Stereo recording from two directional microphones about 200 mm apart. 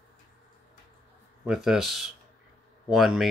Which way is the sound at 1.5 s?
Centre (ahead or behind).